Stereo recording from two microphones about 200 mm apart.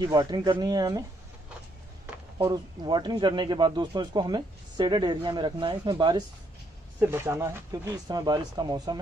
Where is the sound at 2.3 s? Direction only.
20° right (ahead or behind).